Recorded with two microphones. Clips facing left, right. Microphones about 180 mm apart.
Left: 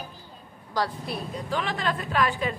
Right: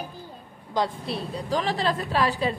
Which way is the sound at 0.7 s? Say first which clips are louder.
Right 2 dB; 25° right (ahead or behind).